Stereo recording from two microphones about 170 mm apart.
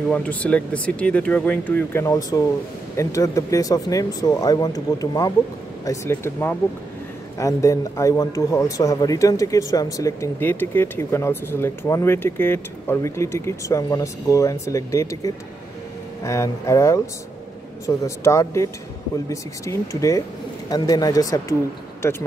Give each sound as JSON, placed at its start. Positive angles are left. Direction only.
{"t": 0.1, "sound": "a man's voice", "side_deg": 5}